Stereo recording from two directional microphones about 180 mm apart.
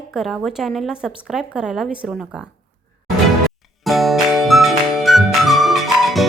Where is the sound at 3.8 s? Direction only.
Centre (ahead or behind).